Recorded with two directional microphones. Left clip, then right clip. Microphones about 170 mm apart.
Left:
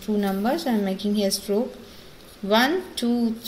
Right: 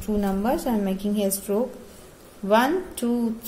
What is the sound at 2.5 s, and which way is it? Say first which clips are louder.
Speech: even; 20° right (ahead or behind).